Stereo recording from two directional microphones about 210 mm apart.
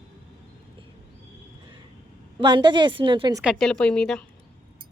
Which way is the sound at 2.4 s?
20° right (ahead or behind).